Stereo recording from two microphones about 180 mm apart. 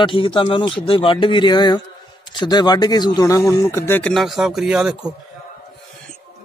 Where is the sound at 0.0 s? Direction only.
30° left (ahead or behind); by 4.1 s 15° left (ahead or behind).